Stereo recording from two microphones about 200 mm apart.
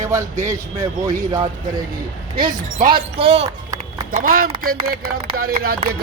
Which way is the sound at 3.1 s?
30° right (ahead or behind).